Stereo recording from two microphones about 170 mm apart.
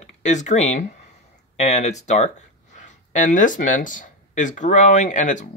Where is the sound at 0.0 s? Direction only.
45° left (ahead or behind).